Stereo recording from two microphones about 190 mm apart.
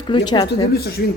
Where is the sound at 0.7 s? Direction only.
55° left (ahead or behind).